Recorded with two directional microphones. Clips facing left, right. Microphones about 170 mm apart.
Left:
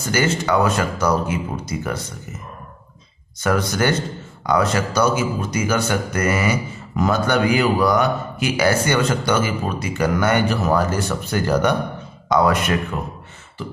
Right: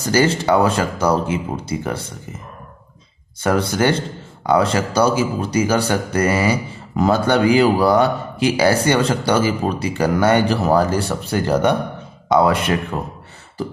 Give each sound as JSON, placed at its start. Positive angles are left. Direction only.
{"t": 0.0, "sound": "speech", "side_deg": -35}
{"t": 3.3, "sound": "a man's voice", "side_deg": -30}
{"t": 13.6, "sound": "beatboxing", "side_deg": -40}